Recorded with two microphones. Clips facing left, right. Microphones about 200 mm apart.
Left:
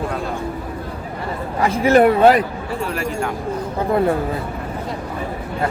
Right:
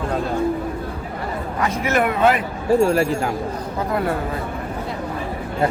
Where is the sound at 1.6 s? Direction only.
30° left (ahead or behind).